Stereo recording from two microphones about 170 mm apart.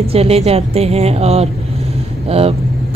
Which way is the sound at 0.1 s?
35° right (ahead or behind).